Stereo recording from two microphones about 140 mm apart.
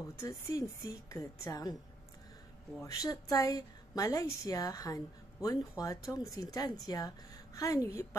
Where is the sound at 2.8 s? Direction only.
25° left (ahead or behind).